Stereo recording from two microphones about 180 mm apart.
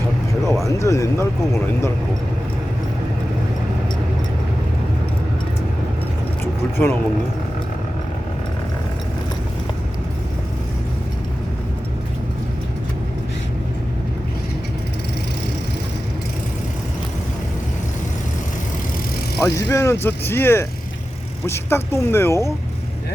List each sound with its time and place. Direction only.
0.6 s speech: 15° left (ahead or behind)
6.4 s vehicle: 15° left (ahead or behind)
19.4 s speech: 15° left (ahead or behind)